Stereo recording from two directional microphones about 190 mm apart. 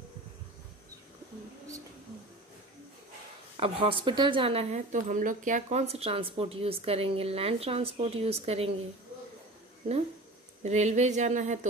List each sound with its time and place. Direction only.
3.5 s a woman's voice: 30° right (ahead or behind)
10.6 s a woman's voice: 35° right (ahead or behind)